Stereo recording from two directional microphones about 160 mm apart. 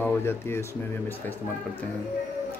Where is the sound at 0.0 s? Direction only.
15° left (ahead or behind).